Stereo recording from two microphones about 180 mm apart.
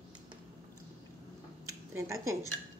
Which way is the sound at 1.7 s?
15° right (ahead or behind).